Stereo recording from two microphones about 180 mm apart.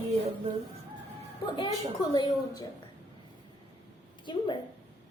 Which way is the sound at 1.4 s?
25° left (ahead or behind).